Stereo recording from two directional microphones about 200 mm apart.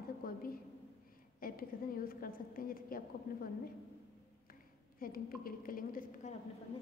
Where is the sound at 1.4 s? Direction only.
45° left (ahead or behind).